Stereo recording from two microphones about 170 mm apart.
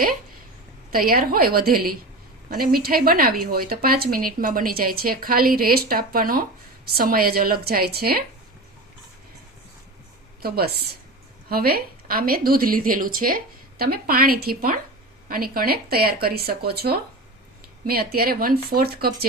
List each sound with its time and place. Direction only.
0.9 s speech: 60° right (ahead or behind)
10.4 s speech: 65° right (ahead or behind)